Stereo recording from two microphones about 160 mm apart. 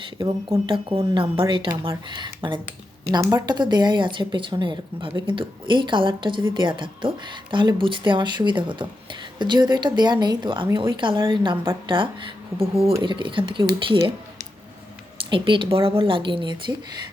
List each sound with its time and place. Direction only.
0.2 s speech: 25° right (ahead or behind)